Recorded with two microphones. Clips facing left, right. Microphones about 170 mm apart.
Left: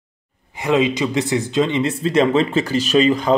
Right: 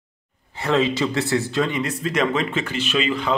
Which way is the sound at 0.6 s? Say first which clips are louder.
Left 3 dB; 15° left (ahead or behind).